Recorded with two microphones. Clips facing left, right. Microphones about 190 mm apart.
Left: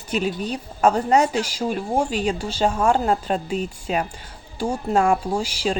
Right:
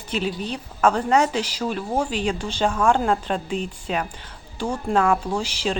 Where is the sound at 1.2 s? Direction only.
10° left (ahead or behind).